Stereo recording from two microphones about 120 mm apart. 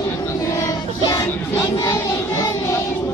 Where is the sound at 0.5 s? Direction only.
25° left (ahead or behind).